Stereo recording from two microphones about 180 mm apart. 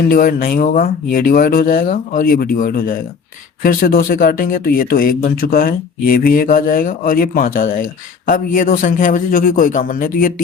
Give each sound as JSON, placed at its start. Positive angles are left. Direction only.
{"t": 0.1, "sound": "speech", "side_deg": 50}